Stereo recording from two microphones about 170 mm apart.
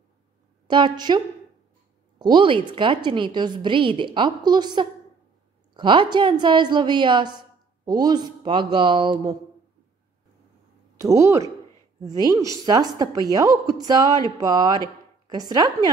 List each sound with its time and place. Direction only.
0.7 s a woman's voice: 25° right (ahead or behind)
11.0 s a woman's voice: 20° right (ahead or behind)